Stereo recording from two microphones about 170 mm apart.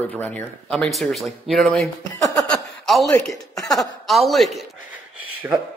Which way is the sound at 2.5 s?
Centre (ahead or behind).